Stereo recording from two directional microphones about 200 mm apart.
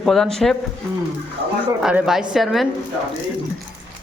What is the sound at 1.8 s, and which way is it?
Speech, 5° right (ahead or behind).